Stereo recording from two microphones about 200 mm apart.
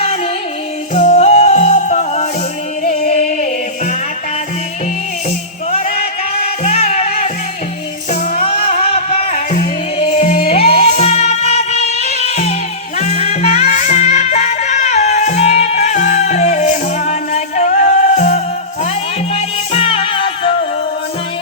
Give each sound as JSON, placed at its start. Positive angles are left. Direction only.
{"t": 0.9, "sound": "music", "side_deg": 35}
{"t": 5.9, "sound": "music", "side_deg": 45}
{"t": 6.7, "sound": "music", "side_deg": 35}
{"t": 8.8, "sound": "music", "side_deg": 30}